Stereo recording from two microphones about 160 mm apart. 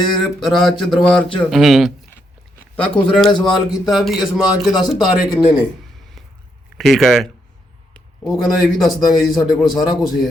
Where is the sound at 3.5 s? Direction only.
Centre (ahead or behind).